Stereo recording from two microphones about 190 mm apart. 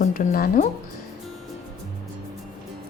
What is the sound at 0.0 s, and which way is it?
Speech, 45° left (ahead or behind).